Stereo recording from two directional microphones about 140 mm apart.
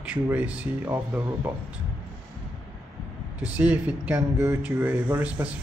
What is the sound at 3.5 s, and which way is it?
Speech, 10° right (ahead or behind).